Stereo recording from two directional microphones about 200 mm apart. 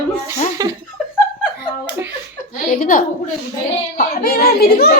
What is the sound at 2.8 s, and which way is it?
A woman's voice, 45° left (ahead or behind).